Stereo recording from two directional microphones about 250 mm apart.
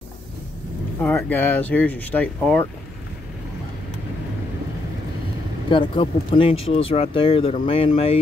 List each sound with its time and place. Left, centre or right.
1.0 s speech: centre
5.7 s speech: centre